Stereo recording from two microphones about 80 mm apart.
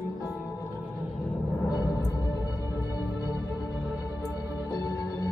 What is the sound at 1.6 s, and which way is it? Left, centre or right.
Music, left.